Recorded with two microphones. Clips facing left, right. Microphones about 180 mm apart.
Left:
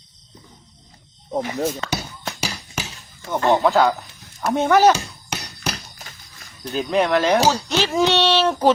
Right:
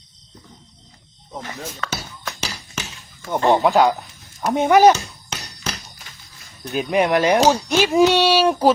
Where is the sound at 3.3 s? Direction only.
15° right (ahead or behind).